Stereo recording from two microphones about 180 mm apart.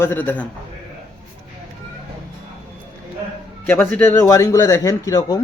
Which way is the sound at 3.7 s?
10° left (ahead or behind).